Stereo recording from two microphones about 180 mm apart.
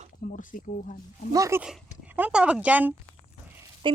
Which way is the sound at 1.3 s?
15° right (ahead or behind).